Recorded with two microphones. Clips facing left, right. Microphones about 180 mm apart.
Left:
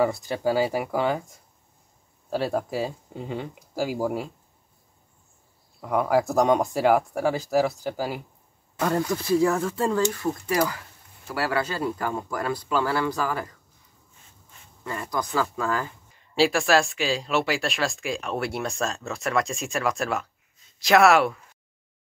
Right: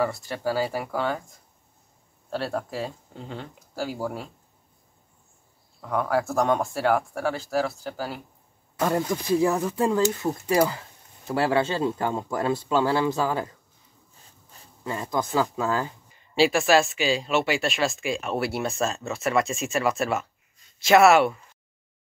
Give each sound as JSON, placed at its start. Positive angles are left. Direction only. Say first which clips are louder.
{"t": 0.0, "sound": "speech", "louder": "left 3 dB", "side_deg": 15}
{"t": 2.2, "sound": "speech", "louder": "left 3 dB", "side_deg": 15}
{"t": 5.8, "sound": "speech", "louder": "left 3 dB", "side_deg": 10}
{"t": 8.8, "sound": "speech", "louder": "even", "side_deg": -15}
{"t": 14.1, "sound": "a sound", "louder": "right 1 dB", "side_deg": -35}
{"t": 14.8, "sound": "speech", "louder": "right 2 dB", "side_deg": -20}
{"t": 16.1, "sound": "speech", "louder": "even", "side_deg": 0}